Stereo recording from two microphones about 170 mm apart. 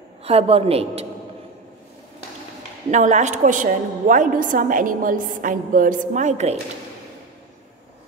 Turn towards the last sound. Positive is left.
turn(degrees=-45)  # may be behind; listen again after turning